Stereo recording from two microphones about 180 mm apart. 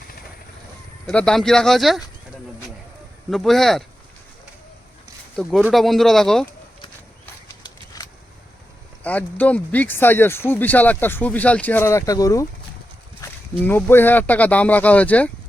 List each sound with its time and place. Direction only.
1.0 s speech: 5° left (ahead or behind)
3.2 s speech: centre (ahead or behind)
5.4 s speech: centre (ahead or behind)
7.9 s a sound: 20° left (ahead or behind)
9.0 s speech: 10° left (ahead or behind)
13.6 s speech: 10° left (ahead or behind)